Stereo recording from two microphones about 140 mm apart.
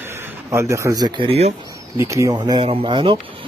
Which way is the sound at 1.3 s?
50° right (ahead or behind).